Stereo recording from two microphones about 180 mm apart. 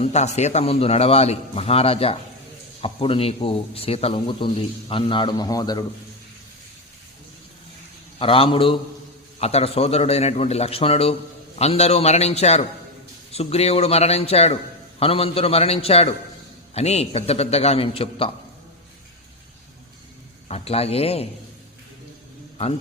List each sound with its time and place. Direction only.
0.0 s a man's voice: 40° left (ahead or behind); by 5.8 s 20° left (ahead or behind)
8.2 s a man's voice: 30° left (ahead or behind)
20.5 s a man's voice: 35° left (ahead or behind)